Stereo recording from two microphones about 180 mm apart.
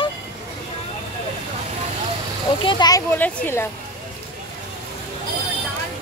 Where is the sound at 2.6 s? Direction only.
25° left (ahead or behind).